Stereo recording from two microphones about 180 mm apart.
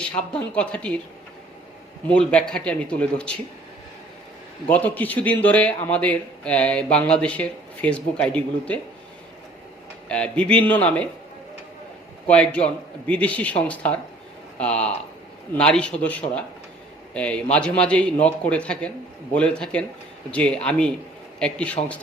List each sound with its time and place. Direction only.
0.0 s a man's voice: 5° left (ahead or behind)
2.0 s speech: 5° left (ahead or behind)
4.7 s a man's voice: 10° left (ahead or behind)
10.1 s a man's voice: 5° left (ahead or behind)
12.3 s a man's voice: 5° left (ahead or behind)